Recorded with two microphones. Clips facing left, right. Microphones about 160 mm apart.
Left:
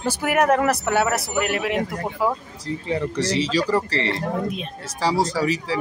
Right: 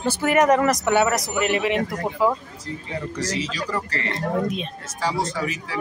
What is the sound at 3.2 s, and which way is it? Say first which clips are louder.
Speech: left 5 dB; 30° left (ahead or behind).